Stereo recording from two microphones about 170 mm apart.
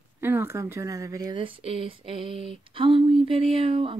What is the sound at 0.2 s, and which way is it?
Speech, 15° right (ahead or behind).